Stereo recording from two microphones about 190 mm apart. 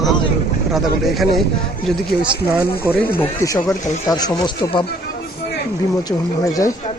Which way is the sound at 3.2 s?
10° left (ahead or behind).